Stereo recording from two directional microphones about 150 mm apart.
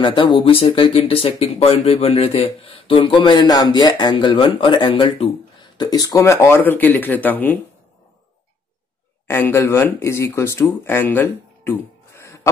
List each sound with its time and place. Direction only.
0.0 s speech: 35° left (ahead or behind); by 7.6 s 10° left (ahead or behind)
9.3 s speech: 15° left (ahead or behind)